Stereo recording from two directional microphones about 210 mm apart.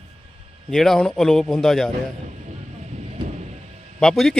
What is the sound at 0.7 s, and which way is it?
Speech, centre (ahead or behind).